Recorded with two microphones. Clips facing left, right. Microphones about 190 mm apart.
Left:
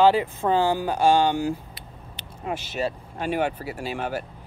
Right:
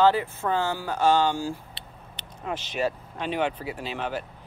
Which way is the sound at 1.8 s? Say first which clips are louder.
Left 2 dB; 30° right (ahead or behind).